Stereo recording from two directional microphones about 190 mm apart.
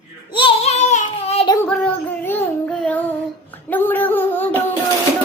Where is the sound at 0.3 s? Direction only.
25° left (ahead or behind).